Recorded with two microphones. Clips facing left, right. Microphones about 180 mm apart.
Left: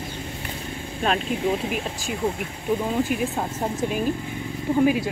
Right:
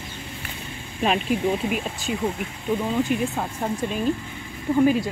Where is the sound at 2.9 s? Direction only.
5° left (ahead or behind).